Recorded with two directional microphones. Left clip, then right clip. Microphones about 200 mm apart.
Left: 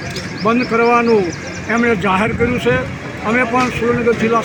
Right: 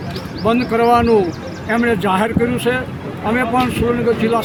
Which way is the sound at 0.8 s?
5° right (ahead or behind).